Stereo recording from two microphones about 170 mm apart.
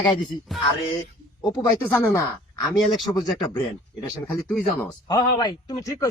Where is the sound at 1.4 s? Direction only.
20° left (ahead or behind).